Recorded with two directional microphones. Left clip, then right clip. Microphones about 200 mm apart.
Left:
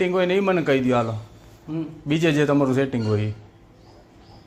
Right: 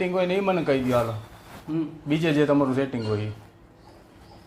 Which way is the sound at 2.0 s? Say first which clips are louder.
Left 2 dB; 45° left (ahead or behind).